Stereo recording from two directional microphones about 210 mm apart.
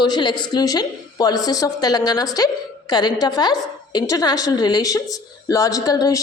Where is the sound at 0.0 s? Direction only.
20° left (ahead or behind).